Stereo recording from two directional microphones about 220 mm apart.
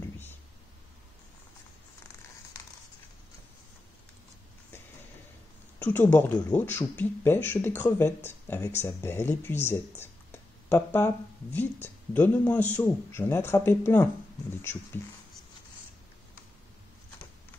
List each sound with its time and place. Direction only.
5.8 s speech: 10° left (ahead or behind)